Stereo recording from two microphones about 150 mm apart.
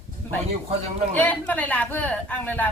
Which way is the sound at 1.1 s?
10° left (ahead or behind).